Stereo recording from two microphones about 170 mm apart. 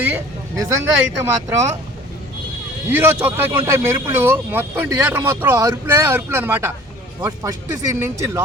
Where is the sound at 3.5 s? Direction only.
15° right (ahead or behind).